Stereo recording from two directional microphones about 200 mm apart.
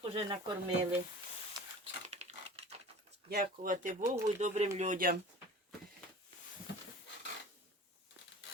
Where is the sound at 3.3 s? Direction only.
45° right (ahead or behind).